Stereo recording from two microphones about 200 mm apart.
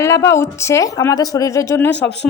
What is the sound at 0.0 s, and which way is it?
Speech, 15° left (ahead or behind).